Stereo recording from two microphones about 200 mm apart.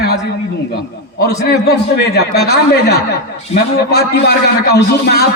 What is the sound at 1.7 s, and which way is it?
A man's voice, 55° left (ahead or behind).